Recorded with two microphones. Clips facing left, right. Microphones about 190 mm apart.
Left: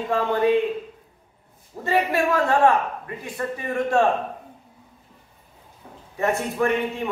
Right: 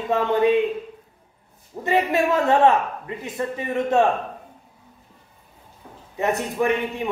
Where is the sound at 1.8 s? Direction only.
20° right (ahead or behind).